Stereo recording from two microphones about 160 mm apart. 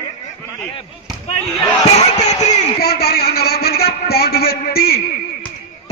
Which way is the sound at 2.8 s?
80° left.